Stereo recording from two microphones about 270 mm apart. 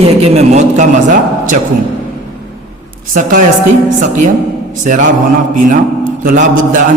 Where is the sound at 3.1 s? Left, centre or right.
Right.